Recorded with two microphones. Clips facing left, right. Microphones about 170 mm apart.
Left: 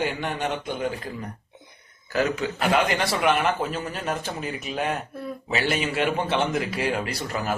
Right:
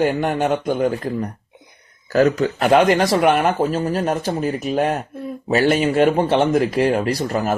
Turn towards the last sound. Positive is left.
turn(degrees=-40)  # may be behind; listen again after turning